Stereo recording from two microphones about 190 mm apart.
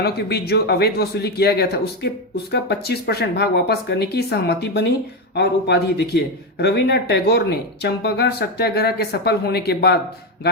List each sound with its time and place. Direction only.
0.0 s speech: 55° left (ahead or behind)